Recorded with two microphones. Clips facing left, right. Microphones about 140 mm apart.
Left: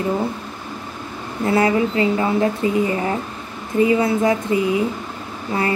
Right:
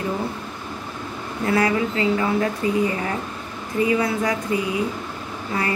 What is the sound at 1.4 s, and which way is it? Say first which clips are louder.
Speech: left 3 dB; 25° left (ahead or behind).